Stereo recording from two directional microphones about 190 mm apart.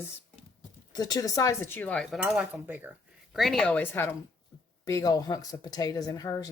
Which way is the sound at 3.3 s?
Centre (ahead or behind).